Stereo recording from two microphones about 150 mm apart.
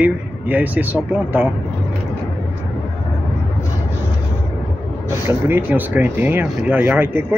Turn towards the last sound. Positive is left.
turn(degrees=-15)  # may be behind; listen again after turning